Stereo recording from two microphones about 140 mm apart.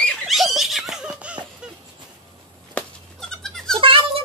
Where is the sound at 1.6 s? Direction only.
5° right (ahead or behind).